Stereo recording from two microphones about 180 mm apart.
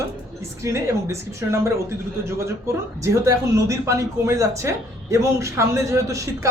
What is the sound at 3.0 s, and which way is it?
Speech, 15° right (ahead or behind).